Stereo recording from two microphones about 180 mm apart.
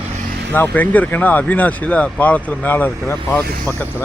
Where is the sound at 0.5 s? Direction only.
10° left (ahead or behind).